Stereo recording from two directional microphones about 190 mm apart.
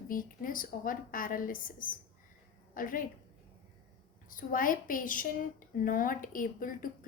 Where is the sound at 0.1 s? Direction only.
45° left (ahead or behind).